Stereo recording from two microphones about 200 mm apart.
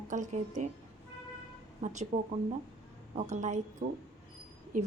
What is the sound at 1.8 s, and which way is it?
A woman's voice, 35° right (ahead or behind).